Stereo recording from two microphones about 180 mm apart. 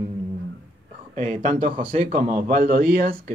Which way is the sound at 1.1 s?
45° right (ahead or behind).